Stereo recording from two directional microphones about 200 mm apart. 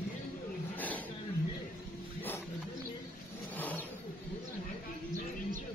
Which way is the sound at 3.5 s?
10° left (ahead or behind).